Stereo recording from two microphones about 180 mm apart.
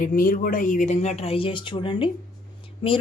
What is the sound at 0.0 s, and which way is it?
Speech, 50° left (ahead or behind).